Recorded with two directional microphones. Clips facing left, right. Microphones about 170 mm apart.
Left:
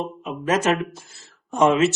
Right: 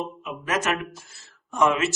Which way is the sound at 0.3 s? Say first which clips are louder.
Left 6 dB; 30° left (ahead or behind).